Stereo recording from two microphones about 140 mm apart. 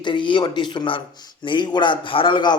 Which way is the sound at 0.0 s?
35° left (ahead or behind).